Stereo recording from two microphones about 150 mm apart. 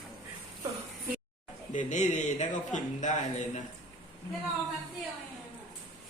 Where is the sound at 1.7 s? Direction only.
55° left (ahead or behind).